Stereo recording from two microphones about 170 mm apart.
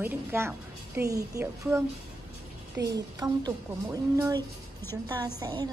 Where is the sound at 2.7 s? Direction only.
20° right (ahead or behind).